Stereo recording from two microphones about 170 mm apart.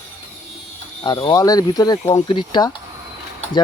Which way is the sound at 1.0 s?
25° left (ahead or behind).